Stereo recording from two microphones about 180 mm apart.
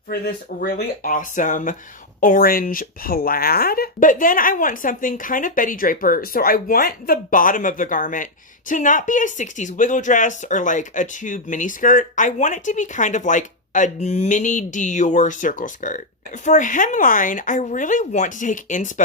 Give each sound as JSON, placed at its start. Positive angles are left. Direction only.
{"t": 0.1, "sound": "speech", "side_deg": 60}